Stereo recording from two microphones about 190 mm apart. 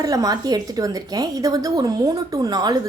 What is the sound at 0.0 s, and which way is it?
A woman's voice, 20° right (ahead or behind).